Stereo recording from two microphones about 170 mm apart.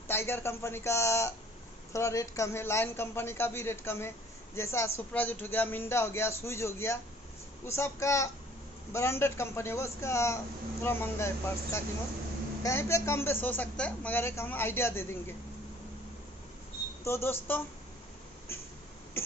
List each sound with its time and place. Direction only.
0.1 s a man's voice: 15° left (ahead or behind)
17.0 s a man's voice: 15° left (ahead or behind)
18.5 s a sound: 15° left (ahead or behind)